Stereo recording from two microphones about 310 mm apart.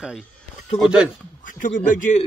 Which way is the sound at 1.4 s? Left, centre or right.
Left.